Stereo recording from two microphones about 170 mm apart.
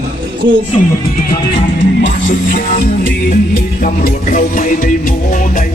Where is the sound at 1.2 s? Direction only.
75° left (ahead or behind).